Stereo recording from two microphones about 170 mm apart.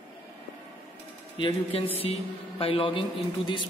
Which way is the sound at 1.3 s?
30° left (ahead or behind).